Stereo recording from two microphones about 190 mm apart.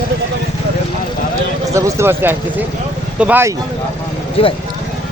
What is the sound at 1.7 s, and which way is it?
Speech, 15° right (ahead or behind).